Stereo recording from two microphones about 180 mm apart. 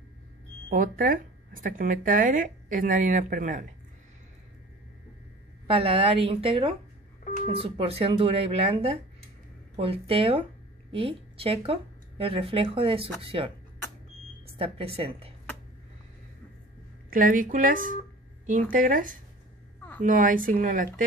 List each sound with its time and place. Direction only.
0.7 s speech: 50° right (ahead or behind)
5.7 s speech: 30° right (ahead or behind)
14.6 s speech: 35° right (ahead or behind)
17.1 s speech: 50° right (ahead or behind)